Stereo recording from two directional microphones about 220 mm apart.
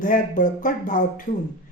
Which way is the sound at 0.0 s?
35° left (ahead or behind).